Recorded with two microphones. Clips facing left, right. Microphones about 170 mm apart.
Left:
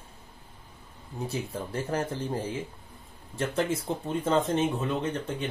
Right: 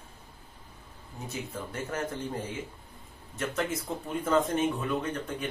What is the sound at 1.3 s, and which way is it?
Speech, 30° left (ahead or behind).